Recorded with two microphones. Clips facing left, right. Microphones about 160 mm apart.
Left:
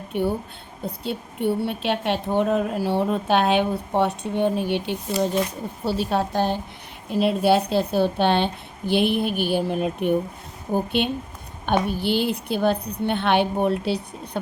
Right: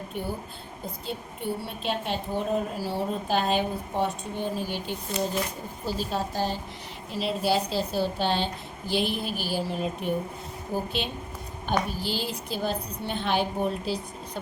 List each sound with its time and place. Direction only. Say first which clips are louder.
0.1 s a woman's voice: left 11 dB; 65° left (ahead or behind)